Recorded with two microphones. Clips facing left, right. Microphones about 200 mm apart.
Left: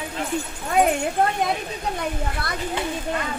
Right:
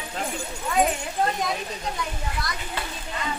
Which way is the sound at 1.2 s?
60° left (ahead or behind).